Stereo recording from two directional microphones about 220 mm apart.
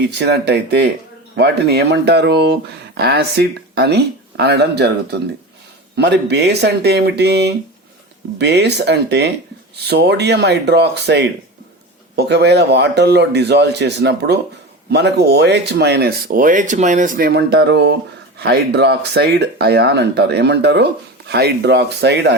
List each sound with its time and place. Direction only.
0.0 s speech: 50° right (ahead or behind)